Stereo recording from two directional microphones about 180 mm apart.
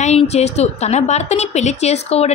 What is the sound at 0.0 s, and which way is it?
A woman's voice, 40° left (ahead or behind).